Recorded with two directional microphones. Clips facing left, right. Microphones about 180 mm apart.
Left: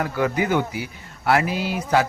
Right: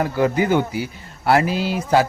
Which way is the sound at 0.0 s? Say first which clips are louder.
Right 4 dB; 30° right (ahead or behind).